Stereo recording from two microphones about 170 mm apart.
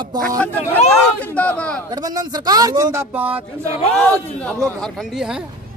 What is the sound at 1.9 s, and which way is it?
A man's voice, 25° right (ahead or behind).